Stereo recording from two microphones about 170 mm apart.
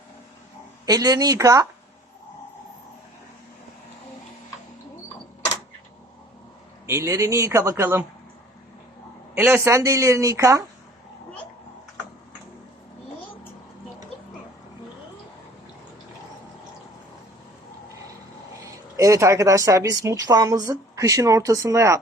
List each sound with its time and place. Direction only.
0.9 s speech: 20° right (ahead or behind)
6.8 s speech: 15° right (ahead or behind)
9.3 s speech: 15° right (ahead or behind)
18.6 s speech: 20° right (ahead or behind)